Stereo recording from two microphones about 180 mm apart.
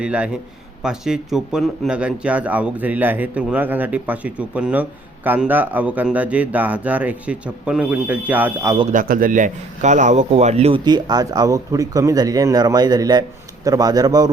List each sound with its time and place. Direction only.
0.0 s a man's voice: 5° right (ahead or behind)
8.9 s a man's voice: 50° right (ahead or behind); by 14.3 s 20° right (ahead or behind)